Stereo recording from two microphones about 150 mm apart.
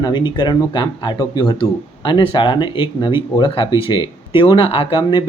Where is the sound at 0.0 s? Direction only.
30° left (ahead or behind).